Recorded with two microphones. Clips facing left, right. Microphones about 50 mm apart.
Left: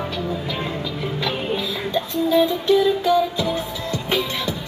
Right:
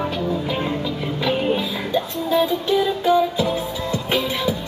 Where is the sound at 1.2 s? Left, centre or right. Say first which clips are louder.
Right 5 dB; centre.